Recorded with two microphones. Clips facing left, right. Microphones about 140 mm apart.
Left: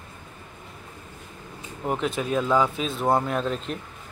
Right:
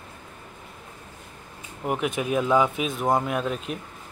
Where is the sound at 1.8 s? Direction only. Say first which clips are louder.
Even; 15° right (ahead or behind).